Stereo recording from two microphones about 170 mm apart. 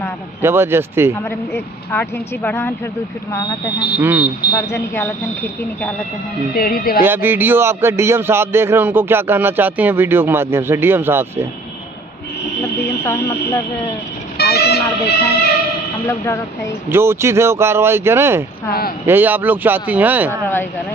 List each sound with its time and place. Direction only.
0.4 s a man's voice: 15° right (ahead or behind)
1.5 s speech: 10° left (ahead or behind)
3.3 s speech: 20° left (ahead or behind)
4.0 s a man's voice: 10° right (ahead or behind)
4.5 s speech: 25° left (ahead or behind)
4.9 s speech: 10° left (ahead or behind)
6.5 s speech: 60° left (ahead or behind)
7.0 s a man's voice: 10° right (ahead or behind)
12.8 s a sound: 15° left (ahead or behind)
14.4 s speech: 70° left (ahead or behind)
16.1 s speech: 15° left (ahead or behind)
16.9 s a man's voice: 15° right (ahead or behind)
18.7 s speech: 60° left (ahead or behind)
19.0 s a man's voice: 10° right (ahead or behind)